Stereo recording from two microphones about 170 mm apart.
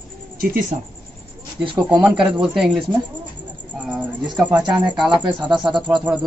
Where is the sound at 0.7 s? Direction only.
45° right (ahead or behind).